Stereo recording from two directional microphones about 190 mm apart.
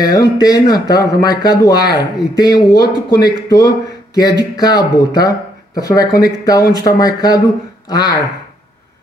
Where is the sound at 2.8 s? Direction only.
55° left (ahead or behind).